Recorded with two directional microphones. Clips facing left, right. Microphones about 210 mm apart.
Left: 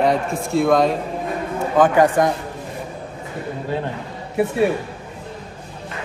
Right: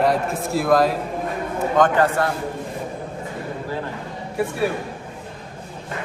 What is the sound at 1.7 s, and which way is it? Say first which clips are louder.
Speech: left 3 dB; 10° left (ahead or behind).